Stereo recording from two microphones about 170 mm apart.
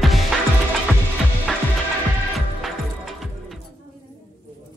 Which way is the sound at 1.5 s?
Centre (ahead or behind).